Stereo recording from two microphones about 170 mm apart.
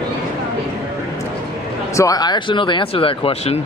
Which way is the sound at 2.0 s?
20° left (ahead or behind).